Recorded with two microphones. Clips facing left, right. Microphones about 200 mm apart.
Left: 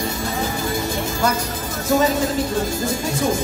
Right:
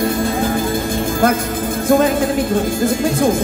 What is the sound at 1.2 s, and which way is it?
Speech, 55° right (ahead or behind).